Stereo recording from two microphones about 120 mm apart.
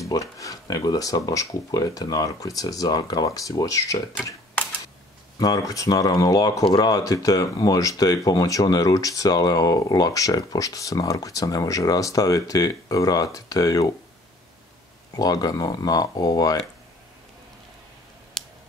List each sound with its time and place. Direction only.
0.0 s speech: 25° left (ahead or behind)
5.4 s speech: 30° left (ahead or behind)
15.1 s speech: 30° left (ahead or behind)
18.4 s a sound: 5° left (ahead or behind)